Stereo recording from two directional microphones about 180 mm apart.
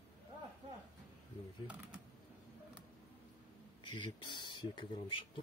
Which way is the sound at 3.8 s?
25° left (ahead or behind).